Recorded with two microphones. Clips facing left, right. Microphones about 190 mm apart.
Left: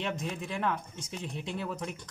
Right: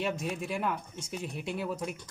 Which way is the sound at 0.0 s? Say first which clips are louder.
Right 2 dB; 10° right (ahead or behind).